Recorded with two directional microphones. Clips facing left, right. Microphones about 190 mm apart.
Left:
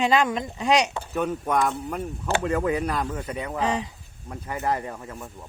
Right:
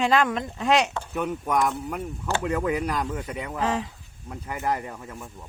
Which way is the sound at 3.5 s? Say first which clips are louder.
Even; centre (ahead or behind).